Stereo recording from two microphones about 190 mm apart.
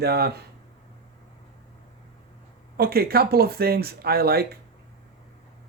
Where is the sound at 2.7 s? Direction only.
55° right (ahead or behind).